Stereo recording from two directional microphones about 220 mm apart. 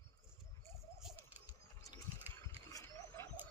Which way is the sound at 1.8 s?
15° left (ahead or behind).